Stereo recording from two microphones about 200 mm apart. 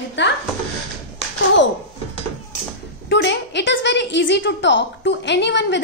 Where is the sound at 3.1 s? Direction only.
60° left (ahead or behind).